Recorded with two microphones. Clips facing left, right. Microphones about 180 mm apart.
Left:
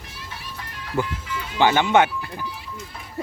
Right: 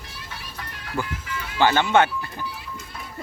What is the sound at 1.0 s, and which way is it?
Speech, 20° left (ahead or behind).